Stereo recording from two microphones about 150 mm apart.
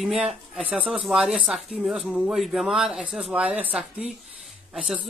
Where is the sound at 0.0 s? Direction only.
5° right (ahead or behind).